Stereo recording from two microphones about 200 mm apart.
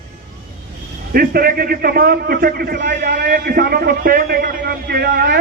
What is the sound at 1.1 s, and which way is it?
A man's voice, 45° right (ahead or behind).